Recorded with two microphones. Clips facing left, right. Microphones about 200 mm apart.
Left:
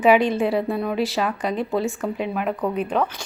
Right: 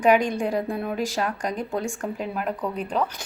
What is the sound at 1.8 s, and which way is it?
Speech, 5° left (ahead or behind).